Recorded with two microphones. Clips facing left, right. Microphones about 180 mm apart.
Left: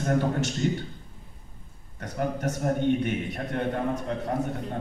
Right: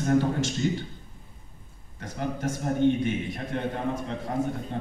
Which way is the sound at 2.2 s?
60° left (ahead or behind).